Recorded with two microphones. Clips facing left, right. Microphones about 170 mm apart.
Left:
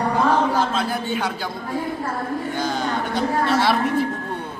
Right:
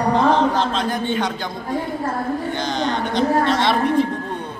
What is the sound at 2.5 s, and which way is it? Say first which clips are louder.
A woman's voice: right 1 dB; 5° left (ahead or behind).